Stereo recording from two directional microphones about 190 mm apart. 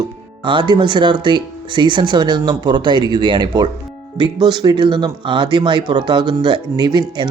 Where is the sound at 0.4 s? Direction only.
25° right (ahead or behind).